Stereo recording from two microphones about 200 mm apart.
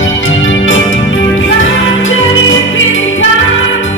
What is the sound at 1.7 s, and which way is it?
Music, 75° left (ahead or behind).